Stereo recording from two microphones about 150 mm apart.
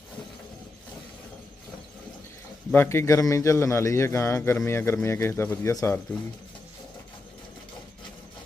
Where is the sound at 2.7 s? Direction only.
15° left (ahead or behind).